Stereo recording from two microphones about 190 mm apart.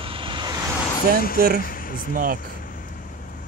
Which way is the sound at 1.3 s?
50° right (ahead or behind).